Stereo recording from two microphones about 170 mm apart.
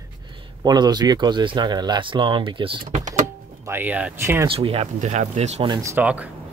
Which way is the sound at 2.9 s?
50° right (ahead or behind).